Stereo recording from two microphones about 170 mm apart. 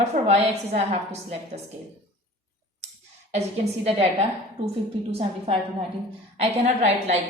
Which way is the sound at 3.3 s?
40° right (ahead or behind).